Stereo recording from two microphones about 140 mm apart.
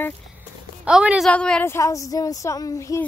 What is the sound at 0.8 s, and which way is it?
Speech, 10° right (ahead or behind).